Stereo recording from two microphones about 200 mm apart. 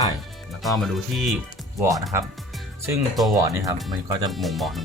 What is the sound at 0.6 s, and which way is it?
Speech, centre (ahead or behind).